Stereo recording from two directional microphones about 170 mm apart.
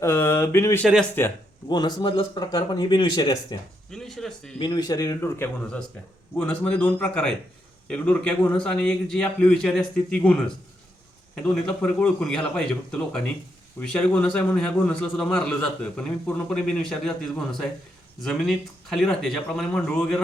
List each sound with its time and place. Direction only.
0.0 s a sound: 15° left (ahead or behind)
1.2 s a man's voice: 15° left (ahead or behind)
1.6 s speech: 25° left (ahead or behind)
3.9 s a man's voice: centre (ahead or behind)
4.6 s a man's voice: 25° left (ahead or behind); by 10.3 s 5° left (ahead or behind)
11.3 s a man's voice: 10° left (ahead or behind)